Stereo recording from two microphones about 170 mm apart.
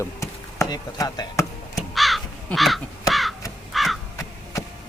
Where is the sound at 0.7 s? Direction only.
20° left (ahead or behind).